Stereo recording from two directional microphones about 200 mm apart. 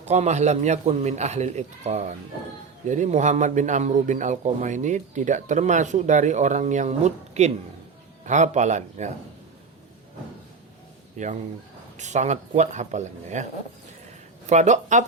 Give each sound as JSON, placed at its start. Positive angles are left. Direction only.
{"t": 0.0, "sound": "a man's voice", "side_deg": -35}
{"t": 11.2, "sound": "a man's voice", "side_deg": -35}
{"t": 14.5, "sound": "a man's voice", "side_deg": -35}